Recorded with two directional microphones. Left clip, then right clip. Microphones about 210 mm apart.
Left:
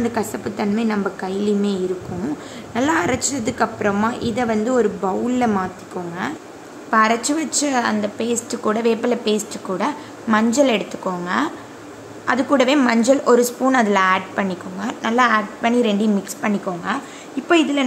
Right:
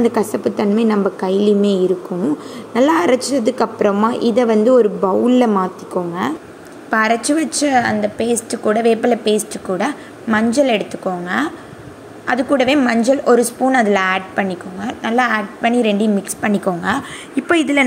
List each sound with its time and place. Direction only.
0.0 s a woman's voice: 15° right (ahead or behind)
5.9 s speech: 5° right (ahead or behind)
6.9 s a woman's voice: 20° right (ahead or behind)